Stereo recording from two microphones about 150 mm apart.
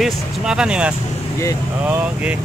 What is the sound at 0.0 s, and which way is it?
Speech, 5° right (ahead or behind).